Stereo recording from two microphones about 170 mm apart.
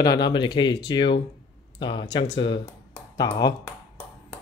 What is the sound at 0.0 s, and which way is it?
Speech, 25° left (ahead or behind).